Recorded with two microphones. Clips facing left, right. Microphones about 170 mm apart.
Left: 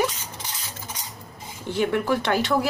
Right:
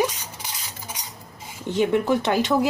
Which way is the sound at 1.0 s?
15° right (ahead or behind).